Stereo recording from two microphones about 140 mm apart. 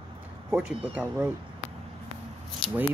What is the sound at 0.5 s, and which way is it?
Speech, 10° right (ahead or behind).